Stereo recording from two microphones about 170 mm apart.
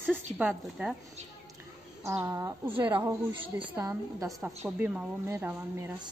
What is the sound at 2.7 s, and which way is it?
Speech, 30° right (ahead or behind).